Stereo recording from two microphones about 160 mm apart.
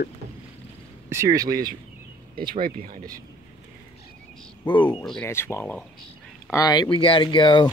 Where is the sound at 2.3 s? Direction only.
65° right (ahead or behind).